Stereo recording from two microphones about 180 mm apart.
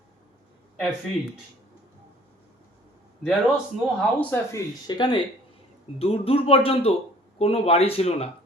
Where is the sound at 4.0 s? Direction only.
10° left (ahead or behind).